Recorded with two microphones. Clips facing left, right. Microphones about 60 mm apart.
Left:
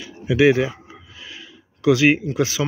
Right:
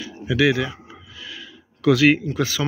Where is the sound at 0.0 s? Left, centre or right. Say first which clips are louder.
Left 3 dB; centre.